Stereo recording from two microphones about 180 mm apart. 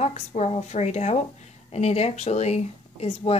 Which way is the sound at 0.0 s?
35° left (ahead or behind).